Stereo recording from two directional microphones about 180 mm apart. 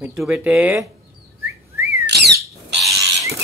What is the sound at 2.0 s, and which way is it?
Squawk, 65° right (ahead or behind).